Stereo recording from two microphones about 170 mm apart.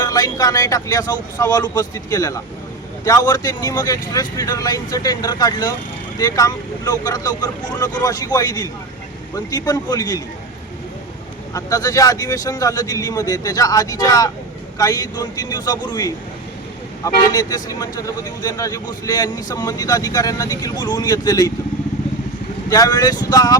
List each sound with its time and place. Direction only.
0.0 s speech: 20° left (ahead or behind)
11.5 s speech: 20° left (ahead or behind)
22.7 s speech: 20° left (ahead or behind)